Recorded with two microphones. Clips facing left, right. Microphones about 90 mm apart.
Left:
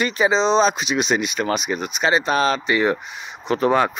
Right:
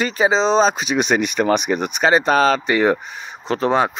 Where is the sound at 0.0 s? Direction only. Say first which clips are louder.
Right 1 dB; 30° right (ahead or behind).